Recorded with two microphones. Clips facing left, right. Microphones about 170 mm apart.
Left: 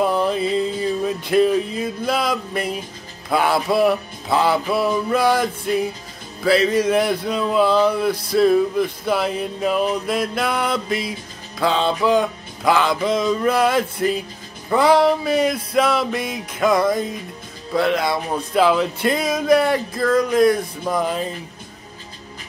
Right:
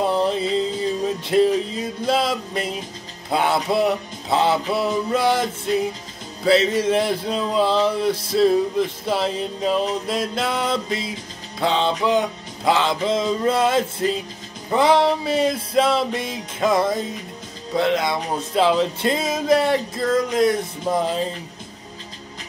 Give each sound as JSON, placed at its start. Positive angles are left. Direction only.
{"t": 0.0, "sound": "music", "side_deg": -25}
{"t": 1.0, "sound": "a sound", "side_deg": -25}
{"t": 2.0, "sound": "speech", "side_deg": -25}